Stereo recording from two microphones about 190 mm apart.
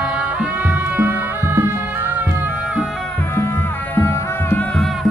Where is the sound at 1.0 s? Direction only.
10° right (ahead or behind).